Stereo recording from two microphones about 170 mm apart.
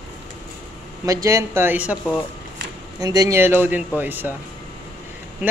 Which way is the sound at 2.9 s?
20° right (ahead or behind).